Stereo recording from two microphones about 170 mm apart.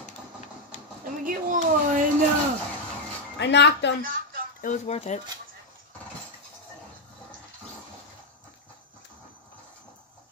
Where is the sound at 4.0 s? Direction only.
55° right (ahead or behind).